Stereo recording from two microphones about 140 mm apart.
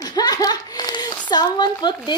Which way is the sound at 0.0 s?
30° left (ahead or behind).